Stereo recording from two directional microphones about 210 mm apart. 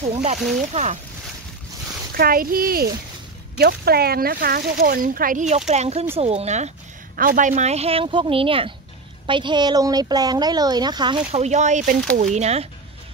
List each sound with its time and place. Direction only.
0.1 s speech: 35° right (ahead or behind)
2.1 s speech: 45° right (ahead or behind); by 11.1 s 20° right (ahead or behind)
11.3 s speech: 35° right (ahead or behind)